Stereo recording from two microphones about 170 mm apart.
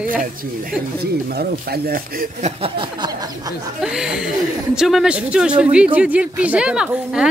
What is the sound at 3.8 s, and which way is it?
Speech, 5° right (ahead or behind).